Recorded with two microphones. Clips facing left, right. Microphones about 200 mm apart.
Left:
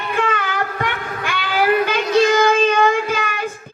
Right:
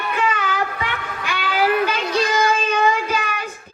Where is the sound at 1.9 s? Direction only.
55° left (ahead or behind).